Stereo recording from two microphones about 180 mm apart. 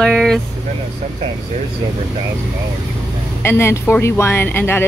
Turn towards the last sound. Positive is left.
turn(degrees=10)  # may be behind; listen again after turning